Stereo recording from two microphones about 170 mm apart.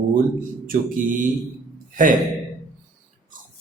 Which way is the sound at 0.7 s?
50° right (ahead or behind).